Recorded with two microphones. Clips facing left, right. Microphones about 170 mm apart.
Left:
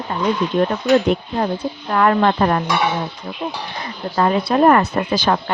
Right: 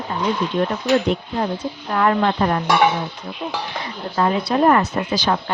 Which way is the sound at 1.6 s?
55° left (ahead or behind).